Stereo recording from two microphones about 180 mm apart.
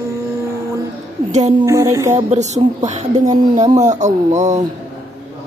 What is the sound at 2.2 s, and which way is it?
A woman's voice, 40° right (ahead or behind).